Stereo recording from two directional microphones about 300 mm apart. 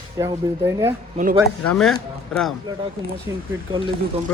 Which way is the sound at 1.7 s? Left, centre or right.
Centre.